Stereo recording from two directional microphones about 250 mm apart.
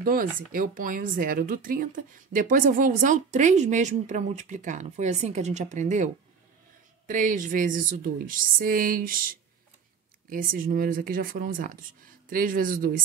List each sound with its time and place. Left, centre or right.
0.0 s speech: right
7.1 s speech: right